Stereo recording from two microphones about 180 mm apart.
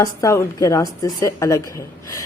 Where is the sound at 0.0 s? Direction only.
15° left (ahead or behind).